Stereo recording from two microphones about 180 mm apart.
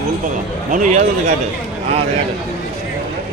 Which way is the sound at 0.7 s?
45° right (ahead or behind).